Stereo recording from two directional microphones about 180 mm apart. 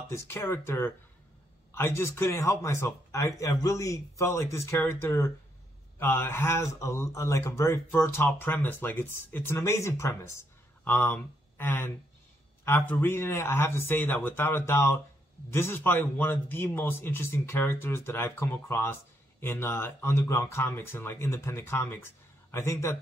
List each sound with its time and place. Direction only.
0.1 s speech: 15° left (ahead or behind)